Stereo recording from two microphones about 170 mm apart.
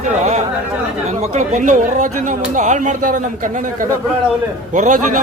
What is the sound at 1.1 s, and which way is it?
Speech, 45° right (ahead or behind).